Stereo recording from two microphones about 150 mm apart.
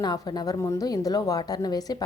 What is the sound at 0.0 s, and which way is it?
A woman's voice, 25° left (ahead or behind).